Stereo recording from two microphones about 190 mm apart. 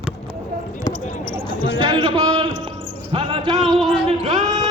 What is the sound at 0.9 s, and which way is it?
Basketball bounce, 20° left (ahead or behind).